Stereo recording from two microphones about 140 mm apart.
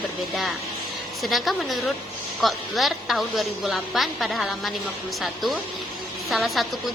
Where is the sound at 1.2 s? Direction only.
Centre (ahead or behind).